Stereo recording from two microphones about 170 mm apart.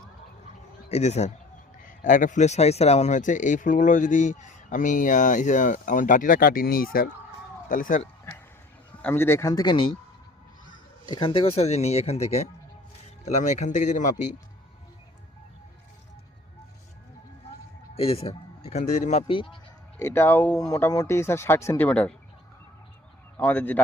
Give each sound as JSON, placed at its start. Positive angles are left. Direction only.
{"t": 0.9, "sound": "speech", "side_deg": 40}
{"t": 1.8, "sound": "speech", "side_deg": 50}
{"t": 9.0, "sound": "speech", "side_deg": 10}
{"t": 11.0, "sound": "speech", "side_deg": 30}
{"t": 17.9, "sound": "speech", "side_deg": 35}
{"t": 19.3, "sound": "speech", "side_deg": 30}
{"t": 20.0, "sound": "speech", "side_deg": 15}
{"t": 23.4, "sound": "speech", "side_deg": 10}